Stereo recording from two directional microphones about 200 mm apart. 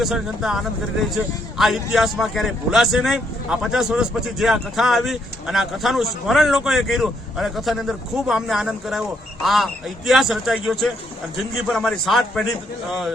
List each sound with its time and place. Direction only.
0.0 s a man's voice: centre (ahead or behind)